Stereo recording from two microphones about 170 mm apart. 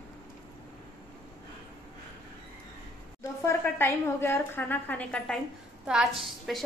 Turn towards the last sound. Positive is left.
turn(degrees=0)  # may be behind; listen again after turning